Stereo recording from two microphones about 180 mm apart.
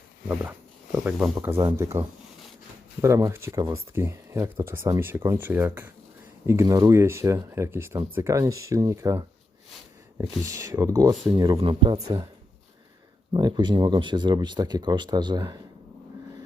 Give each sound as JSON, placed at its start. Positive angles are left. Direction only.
{"t": 1.0, "sound": "speech", "side_deg": -10}
{"t": 13.3, "sound": "speech", "side_deg": -25}